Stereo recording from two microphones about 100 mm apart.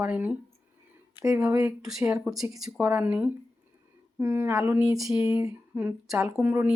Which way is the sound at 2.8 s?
15° right (ahead or behind).